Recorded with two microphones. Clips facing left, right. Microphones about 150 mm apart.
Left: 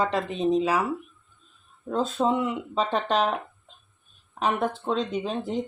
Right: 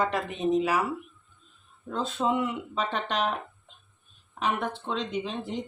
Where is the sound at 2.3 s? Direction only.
30° left (ahead or behind).